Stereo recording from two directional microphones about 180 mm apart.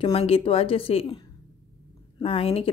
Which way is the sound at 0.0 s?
35° left (ahead or behind).